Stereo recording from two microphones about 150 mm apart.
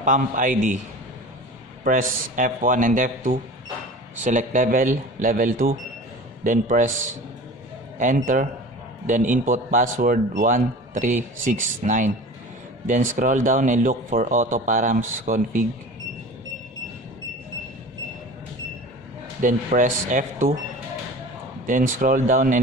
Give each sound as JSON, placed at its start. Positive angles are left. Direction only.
{"t": 0.0, "sound": "a man's voice", "side_deg": -60}
{"t": 1.9, "sound": "a man's voice", "side_deg": -65}
{"t": 19.4, "sound": "a man's voice", "side_deg": -60}
{"t": 21.6, "sound": "a man's voice", "side_deg": -60}